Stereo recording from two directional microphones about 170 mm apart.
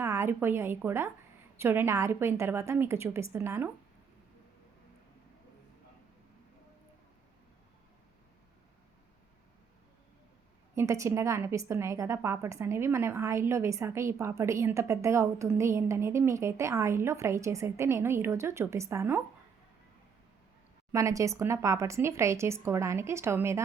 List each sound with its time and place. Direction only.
0.0 s a woman's voice: 15° right (ahead or behind)
10.8 s a woman's voice: 15° right (ahead or behind)
20.9 s a woman's voice: 20° right (ahead or behind)